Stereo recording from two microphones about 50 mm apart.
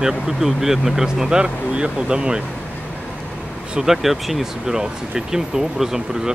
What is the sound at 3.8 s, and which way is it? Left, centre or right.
Speech, centre.